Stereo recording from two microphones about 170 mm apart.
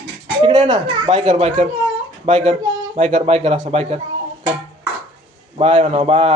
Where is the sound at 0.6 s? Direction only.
25° right (ahead or behind).